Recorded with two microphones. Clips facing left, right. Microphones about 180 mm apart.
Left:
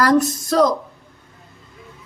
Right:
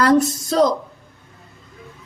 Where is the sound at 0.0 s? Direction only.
25° right (ahead or behind).